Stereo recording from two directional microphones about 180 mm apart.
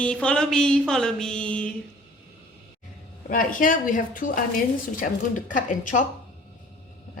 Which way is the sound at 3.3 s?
50° left (ahead or behind).